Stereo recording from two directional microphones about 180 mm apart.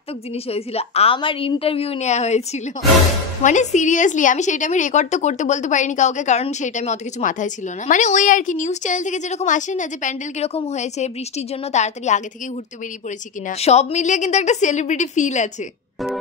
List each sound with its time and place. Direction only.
0.5 s a woman's voice: 35° left (ahead or behind)
13.5 s a woman's voice: 35° left (ahead or behind)